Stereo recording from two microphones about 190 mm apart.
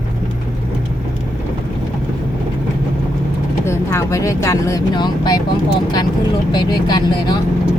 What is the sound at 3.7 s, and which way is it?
Speech, 15° left (ahead or behind).